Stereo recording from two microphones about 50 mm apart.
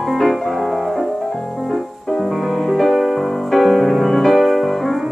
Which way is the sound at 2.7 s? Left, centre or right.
Centre.